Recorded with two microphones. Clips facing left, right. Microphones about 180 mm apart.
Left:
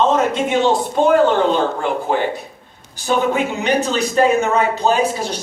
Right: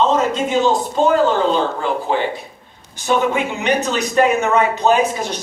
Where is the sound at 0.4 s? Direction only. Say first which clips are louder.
Even; 60° left (ahead or behind).